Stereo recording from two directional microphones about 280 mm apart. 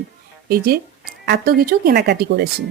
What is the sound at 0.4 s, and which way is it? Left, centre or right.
Speech, right.